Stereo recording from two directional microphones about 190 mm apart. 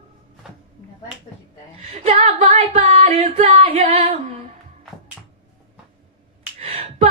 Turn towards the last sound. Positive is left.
turn(degrees=-35)  # may be behind; listen again after turning